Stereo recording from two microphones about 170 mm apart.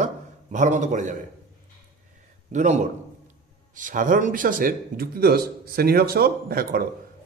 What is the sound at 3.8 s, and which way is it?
A man's voice, 50° right (ahead or behind).